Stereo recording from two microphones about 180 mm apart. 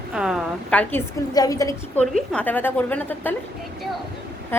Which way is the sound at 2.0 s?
5° left (ahead or behind).